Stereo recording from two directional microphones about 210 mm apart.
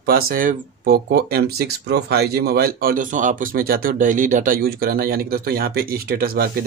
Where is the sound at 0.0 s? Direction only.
45° right (ahead or behind).